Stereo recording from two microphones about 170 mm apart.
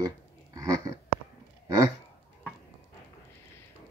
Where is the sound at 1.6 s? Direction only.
20° right (ahead or behind).